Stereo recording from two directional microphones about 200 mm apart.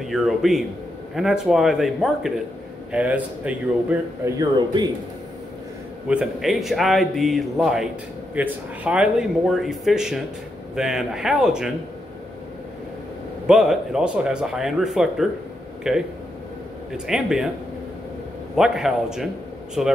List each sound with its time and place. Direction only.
0.0 s a man's voice: centre (ahead or behind)
4.4 s speech: 20° right (ahead or behind)
6.0 s speech: 5° right (ahead or behind)
13.5 s speech: 5° right (ahead or behind)
18.6 s speech: centre (ahead or behind)